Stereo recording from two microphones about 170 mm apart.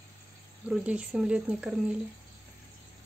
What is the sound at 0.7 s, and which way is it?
Speech, 5° right (ahead or behind).